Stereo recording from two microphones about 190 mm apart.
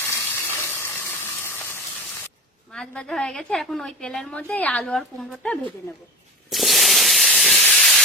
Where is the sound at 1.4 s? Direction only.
10° left (ahead or behind).